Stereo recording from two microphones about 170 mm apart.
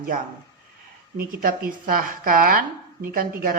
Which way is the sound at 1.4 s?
60° right (ahead or behind).